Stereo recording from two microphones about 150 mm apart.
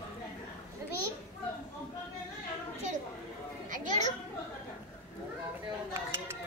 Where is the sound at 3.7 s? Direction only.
55° right (ahead or behind).